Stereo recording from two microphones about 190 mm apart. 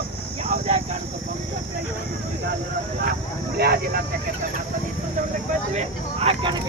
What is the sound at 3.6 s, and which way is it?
Vehicle, 55° right (ahead or behind).